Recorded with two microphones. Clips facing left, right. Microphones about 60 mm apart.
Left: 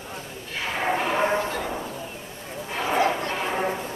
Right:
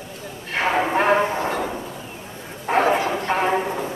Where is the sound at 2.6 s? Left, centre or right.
Right.